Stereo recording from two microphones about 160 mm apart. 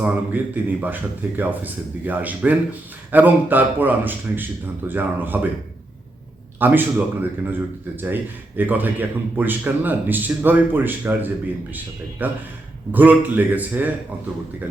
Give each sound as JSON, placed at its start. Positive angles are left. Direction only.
{"t": 0.0, "sound": "speech", "side_deg": -10}
{"t": 6.6, "sound": "speech", "side_deg": -10}